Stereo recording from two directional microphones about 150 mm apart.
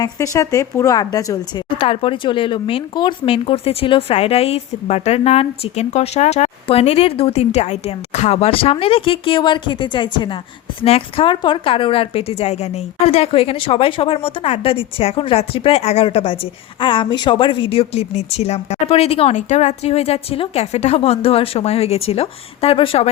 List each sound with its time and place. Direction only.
0.0 s a woman's voice: 20° left (ahead or behind)
1.8 s speech: 35° left (ahead or behind)